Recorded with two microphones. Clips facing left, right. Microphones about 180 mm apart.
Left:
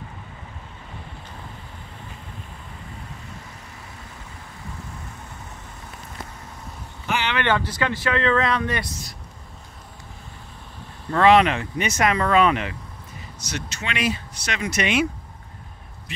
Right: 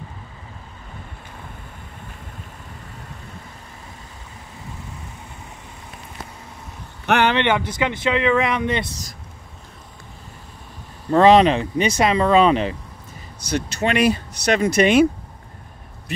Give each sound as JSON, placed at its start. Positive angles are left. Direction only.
{"t": 7.3, "sound": "speech", "side_deg": -20}
{"t": 11.1, "sound": "speech", "side_deg": -30}
{"t": 13.8, "sound": "speech", "side_deg": -45}